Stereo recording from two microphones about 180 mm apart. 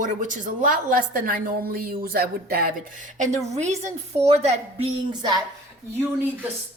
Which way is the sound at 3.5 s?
40° right (ahead or behind).